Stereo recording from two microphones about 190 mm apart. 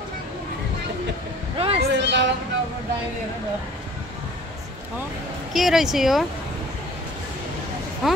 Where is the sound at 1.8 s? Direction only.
65° right (ahead or behind).